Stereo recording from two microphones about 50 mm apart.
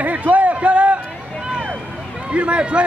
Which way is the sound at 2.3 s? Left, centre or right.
Right.